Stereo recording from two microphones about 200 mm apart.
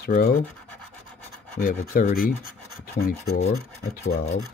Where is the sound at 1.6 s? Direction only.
45° left (ahead or behind).